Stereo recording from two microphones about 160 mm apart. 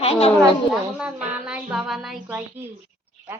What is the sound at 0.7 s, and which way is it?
A woman's voice, 5° right (ahead or behind).